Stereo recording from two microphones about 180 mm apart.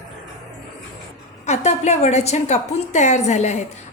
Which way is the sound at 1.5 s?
40° left (ahead or behind).